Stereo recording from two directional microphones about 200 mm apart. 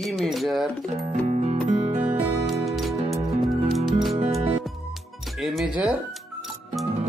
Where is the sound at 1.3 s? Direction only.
35° right (ahead or behind).